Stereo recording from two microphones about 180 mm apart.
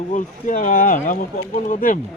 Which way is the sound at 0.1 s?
45° left (ahead or behind).